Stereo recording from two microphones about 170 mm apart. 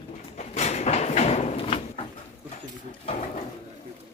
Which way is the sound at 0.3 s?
40° left (ahead or behind).